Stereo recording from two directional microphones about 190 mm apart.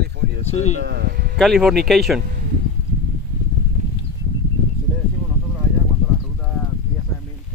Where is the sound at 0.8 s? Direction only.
60° right (ahead or behind).